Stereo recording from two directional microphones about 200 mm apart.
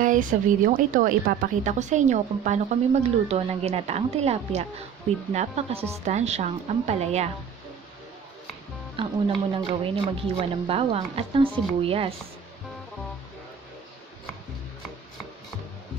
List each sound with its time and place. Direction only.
0.0 s speech: 40° right (ahead or behind)
9.0 s speech: 25° right (ahead or behind)